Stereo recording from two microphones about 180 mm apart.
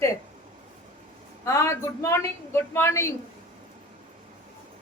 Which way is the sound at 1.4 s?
15° left (ahead or behind).